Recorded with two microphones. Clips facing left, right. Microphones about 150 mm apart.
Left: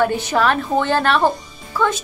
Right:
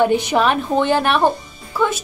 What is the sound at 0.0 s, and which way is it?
Speech, 15° right (ahead or behind).